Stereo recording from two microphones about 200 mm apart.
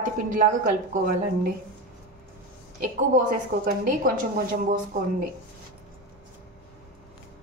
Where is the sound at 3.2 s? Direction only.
45° right (ahead or behind).